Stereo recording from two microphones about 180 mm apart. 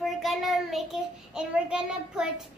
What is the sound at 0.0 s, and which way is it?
Child singing, centre (ahead or behind).